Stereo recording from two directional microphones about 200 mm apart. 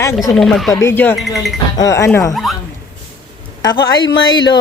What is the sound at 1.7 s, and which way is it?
Speech, 15° left (ahead or behind).